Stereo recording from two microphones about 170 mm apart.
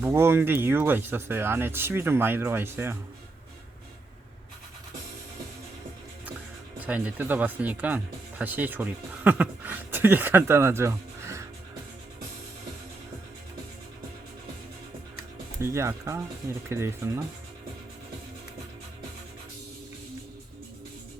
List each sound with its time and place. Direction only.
0.0 s speech: 15° right (ahead or behind)
6.7 s speech: 10° right (ahead or behind)
15.6 s speech: 15° right (ahead or behind)